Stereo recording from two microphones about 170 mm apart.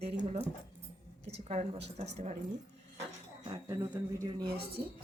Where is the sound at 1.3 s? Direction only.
35° right (ahead or behind).